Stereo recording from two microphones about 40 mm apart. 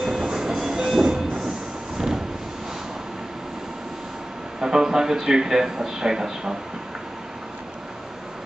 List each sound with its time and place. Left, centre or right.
0.0 s train: centre
2.0 s vehicle: centre
4.6 s a man's voice: centre